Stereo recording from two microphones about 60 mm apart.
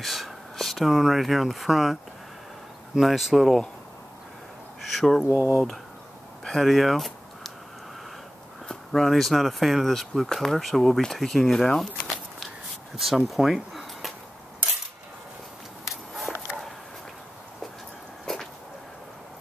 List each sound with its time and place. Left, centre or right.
0.0 s speech: centre
4.9 s speech: centre
5.2 s speech: left
6.4 s a sound: centre
8.6 s speech: centre
12.9 s speech: centre
13.3 s a sound: centre
15.8 s walk: centre
18.2 s a sound: centre